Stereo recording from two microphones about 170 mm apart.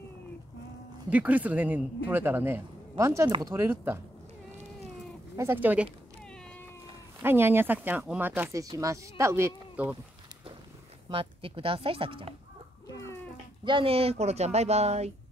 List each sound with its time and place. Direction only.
1.1 s speech: 10° right (ahead or behind)
3.3 s speech: 25° right (ahead or behind)
3.5 s speech: 10° right (ahead or behind)
5.3 s speech: 15° right (ahead or behind)
7.2 s speech: 15° right (ahead or behind)
11.1 s a woman's voice: 30° right (ahead or behind)
12.8 s a sound: 15° left (ahead or behind)
13.7 s a woman's voice: 30° right (ahead or behind)